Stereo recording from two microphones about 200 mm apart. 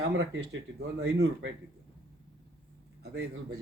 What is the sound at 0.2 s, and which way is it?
Speech, 60° right (ahead or behind).